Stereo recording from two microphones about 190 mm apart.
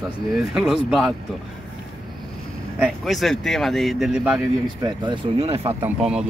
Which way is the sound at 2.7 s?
5° right (ahead or behind).